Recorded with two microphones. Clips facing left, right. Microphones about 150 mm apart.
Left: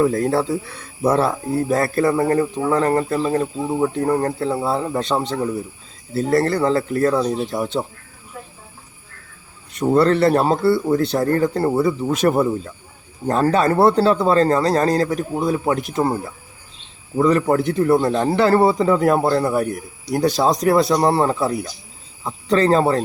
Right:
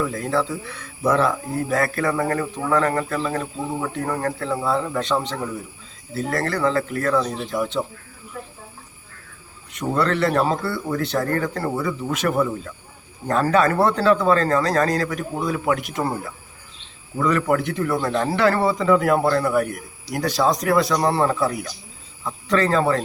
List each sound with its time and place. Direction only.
0.0 s a man's voice: 40° left (ahead or behind)
9.7 s a man's voice: 35° left (ahead or behind)
17.2 s a man's voice: 30° left (ahead or behind)